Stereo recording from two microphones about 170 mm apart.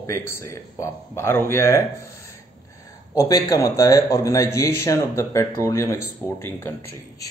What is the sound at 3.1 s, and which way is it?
Speech, 20° left (ahead or behind).